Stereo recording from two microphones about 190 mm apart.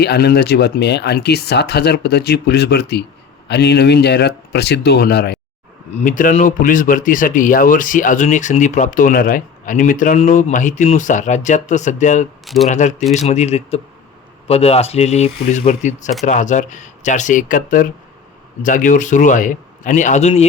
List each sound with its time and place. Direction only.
0.0 s speech: 60° left (ahead or behind)
5.9 s speech: 40° left (ahead or behind)